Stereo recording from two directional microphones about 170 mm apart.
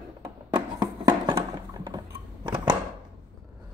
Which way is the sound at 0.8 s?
25° right (ahead or behind).